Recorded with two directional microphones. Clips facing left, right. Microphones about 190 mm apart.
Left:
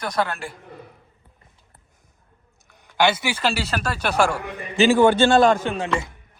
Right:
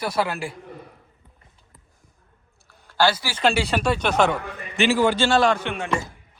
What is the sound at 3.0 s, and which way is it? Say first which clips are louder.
Speech: left 1 dB; 20° left (ahead or behind).